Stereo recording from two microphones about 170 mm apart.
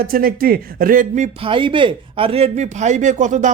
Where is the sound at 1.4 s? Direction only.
30° right (ahead or behind).